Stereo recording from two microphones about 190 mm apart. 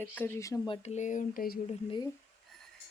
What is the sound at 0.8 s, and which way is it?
Speech, 40° left (ahead or behind).